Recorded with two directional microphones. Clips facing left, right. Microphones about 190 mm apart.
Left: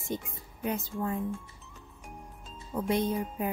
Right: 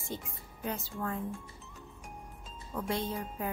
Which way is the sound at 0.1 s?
20° left (ahead or behind).